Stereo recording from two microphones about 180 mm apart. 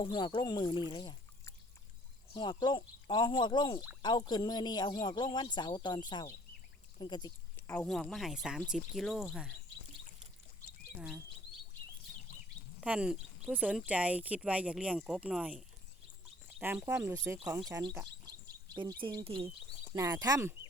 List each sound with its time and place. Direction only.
0.0 s speech: 25° left (ahead or behind)
0.9 s a sound: 25° left (ahead or behind)
2.3 s speech: 25° left (ahead or behind)
7.7 s speech: 5° left (ahead or behind)
12.8 s speech: 5° right (ahead or behind)
16.5 s bird: 5° right (ahead or behind)
17.0 s speech: 15° right (ahead or behind)